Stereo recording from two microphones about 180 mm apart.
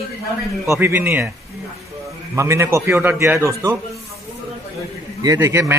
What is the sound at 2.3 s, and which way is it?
A man's voice, 15° right (ahead or behind).